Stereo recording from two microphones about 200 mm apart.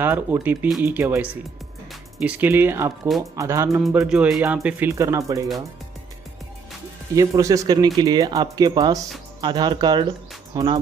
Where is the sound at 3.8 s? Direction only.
Centre (ahead or behind).